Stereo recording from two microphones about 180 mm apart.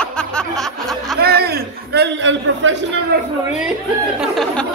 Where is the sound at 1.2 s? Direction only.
60° right (ahead or behind); by 2.8 s 90° right.